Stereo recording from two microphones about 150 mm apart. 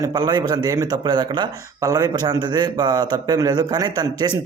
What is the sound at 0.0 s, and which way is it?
Speech, 25° right (ahead or behind).